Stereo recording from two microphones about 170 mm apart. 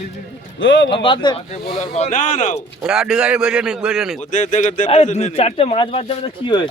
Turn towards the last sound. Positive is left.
turn(degrees=30)  # may be behind; listen again after turning